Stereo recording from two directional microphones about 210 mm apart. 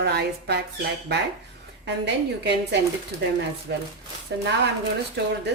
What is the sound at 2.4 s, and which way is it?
Speech, 55° right (ahead or behind).